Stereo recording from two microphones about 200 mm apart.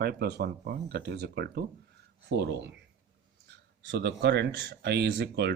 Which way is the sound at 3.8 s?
60° right (ahead or behind).